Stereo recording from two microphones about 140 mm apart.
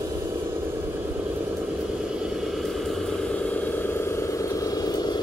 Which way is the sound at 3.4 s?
10° left (ahead or behind).